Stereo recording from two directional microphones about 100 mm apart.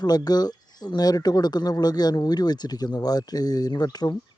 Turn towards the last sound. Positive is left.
turn(degrees=40)  # may be behind; listen again after turning